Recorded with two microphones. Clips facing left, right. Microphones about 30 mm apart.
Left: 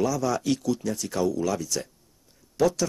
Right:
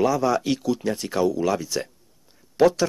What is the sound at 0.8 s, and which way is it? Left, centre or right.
Speech, right.